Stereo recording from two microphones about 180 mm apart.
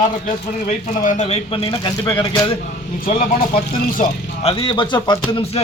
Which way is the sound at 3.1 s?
50° left (ahead or behind).